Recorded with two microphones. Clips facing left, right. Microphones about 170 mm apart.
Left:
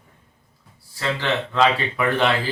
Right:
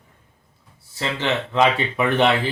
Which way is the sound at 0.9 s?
20° right (ahead or behind).